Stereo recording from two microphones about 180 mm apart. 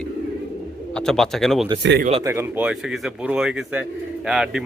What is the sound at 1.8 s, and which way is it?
Speech, 70° right (ahead or behind).